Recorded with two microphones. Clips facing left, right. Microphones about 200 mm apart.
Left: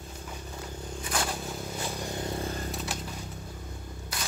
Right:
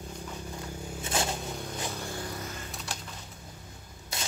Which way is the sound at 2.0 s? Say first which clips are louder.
Left 4 dB; 20° left (ahead or behind).